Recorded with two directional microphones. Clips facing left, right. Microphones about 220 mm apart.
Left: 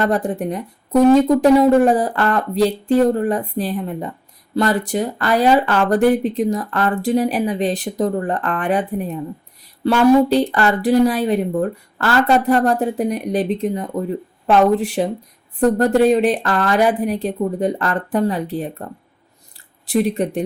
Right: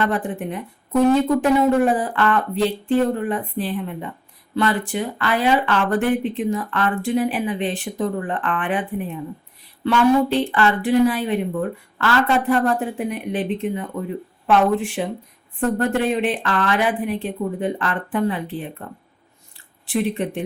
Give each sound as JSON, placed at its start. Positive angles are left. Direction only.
{"t": 0.0, "sound": "speech", "side_deg": 40}